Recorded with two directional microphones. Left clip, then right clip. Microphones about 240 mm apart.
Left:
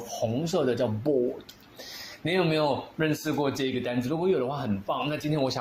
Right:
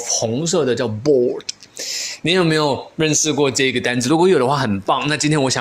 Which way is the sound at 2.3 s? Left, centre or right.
Right.